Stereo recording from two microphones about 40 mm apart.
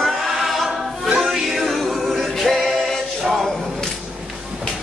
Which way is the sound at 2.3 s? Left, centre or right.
Centre.